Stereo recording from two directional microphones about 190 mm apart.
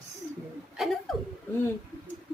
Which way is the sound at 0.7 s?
Centre (ahead or behind).